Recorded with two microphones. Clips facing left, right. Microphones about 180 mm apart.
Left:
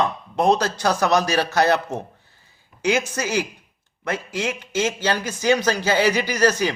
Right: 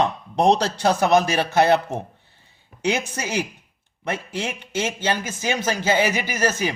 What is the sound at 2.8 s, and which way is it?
Speech, 30° right (ahead or behind).